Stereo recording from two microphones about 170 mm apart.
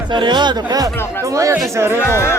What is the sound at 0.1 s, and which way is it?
Speech, 25° right (ahead or behind).